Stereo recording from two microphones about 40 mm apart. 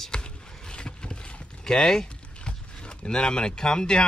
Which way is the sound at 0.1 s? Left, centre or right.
Left.